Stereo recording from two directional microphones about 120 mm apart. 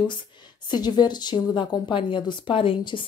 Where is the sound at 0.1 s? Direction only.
40° left (ahead or behind).